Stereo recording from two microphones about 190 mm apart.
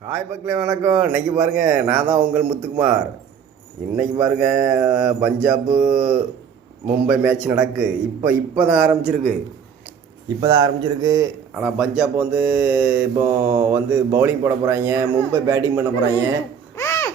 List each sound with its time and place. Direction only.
0.4 s mantra: 15° right (ahead or behind)
9.0 s a man's voice: 40° right (ahead or behind)
10.2 s a man's voice: 20° right (ahead or behind)
11.6 s mantra: 5° right (ahead or behind)
16.7 s babbling: 15° left (ahead or behind)